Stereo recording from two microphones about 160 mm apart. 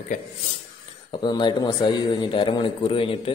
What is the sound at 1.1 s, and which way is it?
A man's voice, 30° left (ahead or behind).